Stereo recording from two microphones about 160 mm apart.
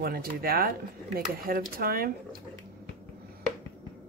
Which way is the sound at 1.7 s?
65° right (ahead or behind).